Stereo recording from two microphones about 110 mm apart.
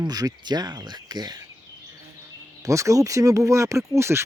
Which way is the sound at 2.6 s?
30° right (ahead or behind).